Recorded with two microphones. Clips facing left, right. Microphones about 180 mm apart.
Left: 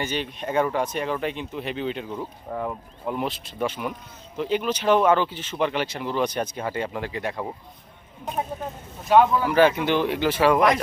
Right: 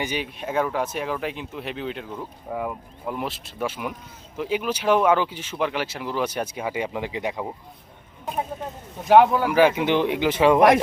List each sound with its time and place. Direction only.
0.0 s speech: 10° right (ahead or behind)
9.0 s speech: 65° right (ahead or behind)
9.5 s speech: 15° right (ahead or behind)